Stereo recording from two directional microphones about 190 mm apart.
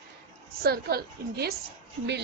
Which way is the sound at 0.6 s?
55° right (ahead or behind).